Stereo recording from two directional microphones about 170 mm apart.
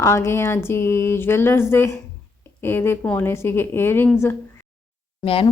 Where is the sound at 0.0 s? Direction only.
15° left (ahead or behind).